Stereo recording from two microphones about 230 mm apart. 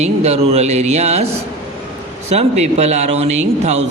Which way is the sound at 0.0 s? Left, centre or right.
Right.